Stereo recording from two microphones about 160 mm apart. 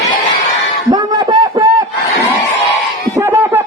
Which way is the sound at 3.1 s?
10° right (ahead or behind).